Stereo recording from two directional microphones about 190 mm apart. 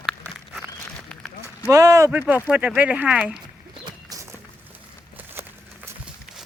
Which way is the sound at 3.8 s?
20° right (ahead or behind).